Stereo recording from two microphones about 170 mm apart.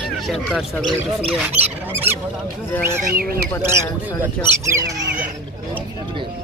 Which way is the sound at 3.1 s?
60° right (ahead or behind).